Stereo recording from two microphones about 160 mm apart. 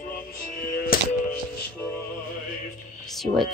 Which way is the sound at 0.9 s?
65° left (ahead or behind).